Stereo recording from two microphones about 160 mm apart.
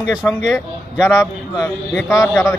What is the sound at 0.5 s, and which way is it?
A man's voice, 20° left (ahead or behind).